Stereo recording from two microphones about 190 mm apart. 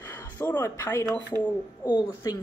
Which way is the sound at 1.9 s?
20° left (ahead or behind).